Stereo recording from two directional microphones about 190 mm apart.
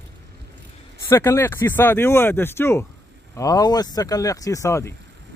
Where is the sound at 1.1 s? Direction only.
15° left (ahead or behind).